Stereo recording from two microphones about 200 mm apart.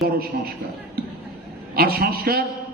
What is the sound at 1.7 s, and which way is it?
Speech, 50° right (ahead or behind).